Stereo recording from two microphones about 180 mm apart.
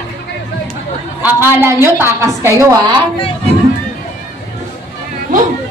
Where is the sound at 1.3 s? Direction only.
10° right (ahead or behind).